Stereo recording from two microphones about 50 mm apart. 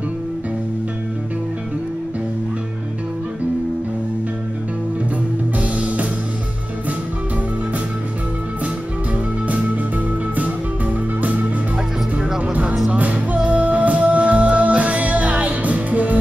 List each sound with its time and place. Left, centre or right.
5.6 s music: right
11.1 s music: right
12.9 s music: right